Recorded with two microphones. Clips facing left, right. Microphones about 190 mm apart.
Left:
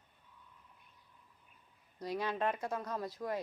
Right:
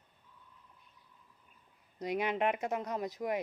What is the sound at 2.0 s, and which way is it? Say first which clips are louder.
Speech: right 3 dB; 20° right (ahead or behind).